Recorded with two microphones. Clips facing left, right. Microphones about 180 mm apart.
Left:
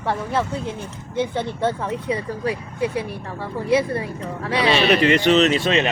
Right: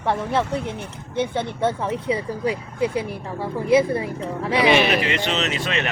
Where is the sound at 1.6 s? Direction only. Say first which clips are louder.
Right 1 dB; 10° right (ahead or behind).